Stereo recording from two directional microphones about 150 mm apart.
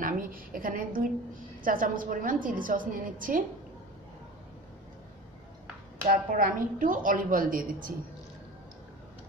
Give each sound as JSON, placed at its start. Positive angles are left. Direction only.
{"t": 0.0, "sound": "a woman's voice", "side_deg": -70}
{"t": 6.0, "sound": "a woman's voice", "side_deg": -70}